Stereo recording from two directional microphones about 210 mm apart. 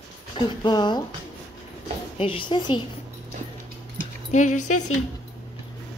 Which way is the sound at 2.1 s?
25° left (ahead or behind).